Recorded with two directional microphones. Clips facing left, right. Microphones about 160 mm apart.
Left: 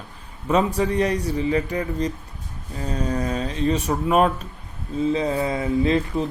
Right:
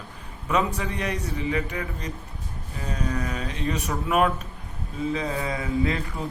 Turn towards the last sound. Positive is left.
turn(degrees=25)  # may be behind; listen again after turning